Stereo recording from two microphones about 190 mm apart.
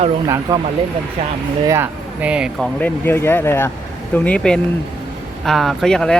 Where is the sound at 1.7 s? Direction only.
10° right (ahead or behind); by 3.7 s 10° left (ahead or behind).